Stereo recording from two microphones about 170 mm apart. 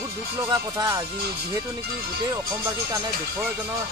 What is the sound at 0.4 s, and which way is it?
Speech, 20° right (ahead or behind).